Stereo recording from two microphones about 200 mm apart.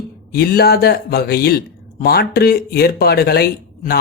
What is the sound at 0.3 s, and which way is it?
Speech, 50° left (ahead or behind).